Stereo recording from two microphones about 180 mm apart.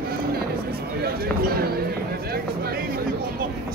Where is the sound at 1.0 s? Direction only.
60° right (ahead or behind).